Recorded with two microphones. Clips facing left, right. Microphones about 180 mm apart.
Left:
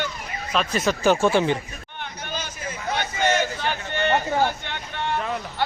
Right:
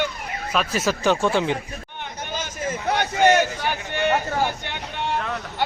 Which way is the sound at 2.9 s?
70° right (ahead or behind).